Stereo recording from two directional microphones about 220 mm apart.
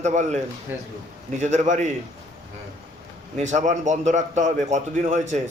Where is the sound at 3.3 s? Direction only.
30° right (ahead or behind).